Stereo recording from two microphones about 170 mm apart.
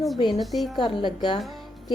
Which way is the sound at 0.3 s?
Centre (ahead or behind).